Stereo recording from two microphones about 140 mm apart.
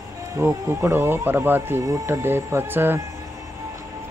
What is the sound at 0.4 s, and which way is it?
Speech, 20° right (ahead or behind).